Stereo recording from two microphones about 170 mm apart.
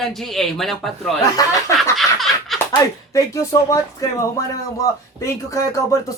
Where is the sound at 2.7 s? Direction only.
20° left (ahead or behind).